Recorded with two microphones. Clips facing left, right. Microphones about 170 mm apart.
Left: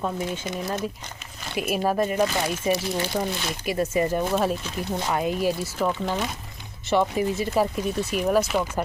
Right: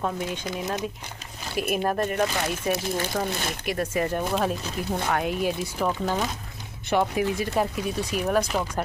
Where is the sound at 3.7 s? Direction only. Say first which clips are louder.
Left 3 dB; 10° left (ahead or behind).